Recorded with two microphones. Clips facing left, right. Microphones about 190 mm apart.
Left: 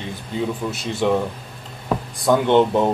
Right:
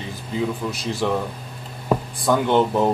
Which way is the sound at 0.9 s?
20° left (ahead or behind).